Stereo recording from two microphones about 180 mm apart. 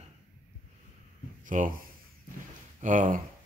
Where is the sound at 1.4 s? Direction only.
45° right (ahead or behind).